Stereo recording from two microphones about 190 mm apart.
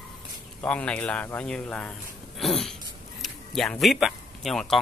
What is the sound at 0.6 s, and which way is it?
Speech, 5° left (ahead or behind).